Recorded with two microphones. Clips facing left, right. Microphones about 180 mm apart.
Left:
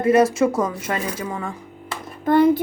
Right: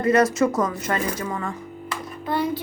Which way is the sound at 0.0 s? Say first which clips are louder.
Left 2 dB; 10° left (ahead or behind).